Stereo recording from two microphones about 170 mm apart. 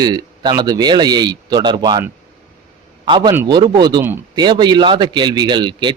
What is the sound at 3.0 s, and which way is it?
A man's voice, 30° right (ahead or behind).